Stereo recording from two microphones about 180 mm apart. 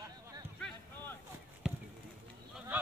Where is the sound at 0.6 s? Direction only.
10° left (ahead or behind).